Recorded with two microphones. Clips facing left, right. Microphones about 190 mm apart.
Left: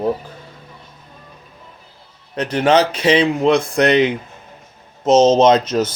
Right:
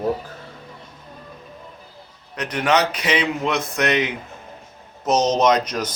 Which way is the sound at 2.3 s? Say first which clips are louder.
Left 5 dB; 30° left (ahead or behind).